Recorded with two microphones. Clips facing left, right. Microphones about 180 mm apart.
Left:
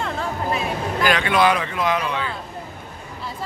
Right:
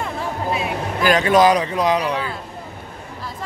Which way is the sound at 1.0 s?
40° right (ahead or behind).